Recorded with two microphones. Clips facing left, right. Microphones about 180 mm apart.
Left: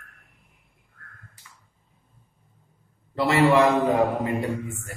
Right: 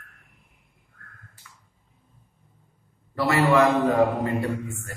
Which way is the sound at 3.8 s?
20° left (ahead or behind).